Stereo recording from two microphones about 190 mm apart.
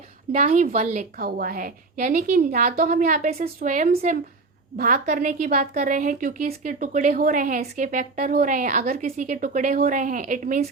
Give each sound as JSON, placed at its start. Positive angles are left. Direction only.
{"t": 0.3, "sound": "a woman's voice", "side_deg": -40}